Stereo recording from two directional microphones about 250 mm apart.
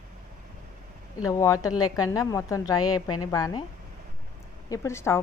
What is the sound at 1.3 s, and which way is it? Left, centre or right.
A woman's voice, centre.